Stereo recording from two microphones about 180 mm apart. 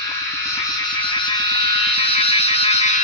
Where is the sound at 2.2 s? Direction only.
35° left (ahead or behind).